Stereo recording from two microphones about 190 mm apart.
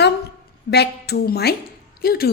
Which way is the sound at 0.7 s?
60° left (ahead or behind).